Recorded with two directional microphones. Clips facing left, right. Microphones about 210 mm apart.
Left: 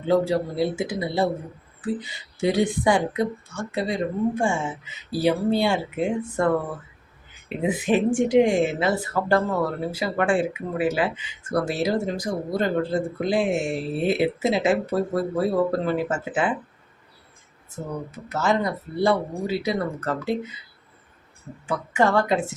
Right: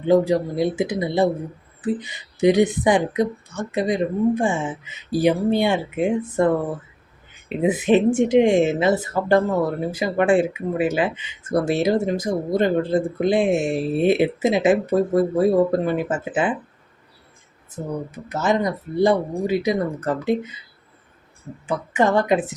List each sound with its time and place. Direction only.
0.1 s a woman's voice: 20° right (ahead or behind)
7.6 s a woman's voice: 20° right (ahead or behind)
18.3 s a woman's voice: 20° right (ahead or behind)
21.7 s a woman's voice: 20° right (ahead or behind)